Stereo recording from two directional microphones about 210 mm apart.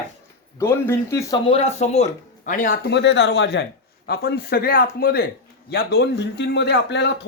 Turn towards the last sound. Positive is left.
turn(degrees=55)  # may be behind; listen again after turning